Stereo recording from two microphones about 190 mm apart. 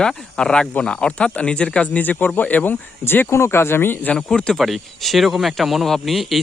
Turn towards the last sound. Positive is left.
turn(degrees=0)  # may be behind; listen again after turning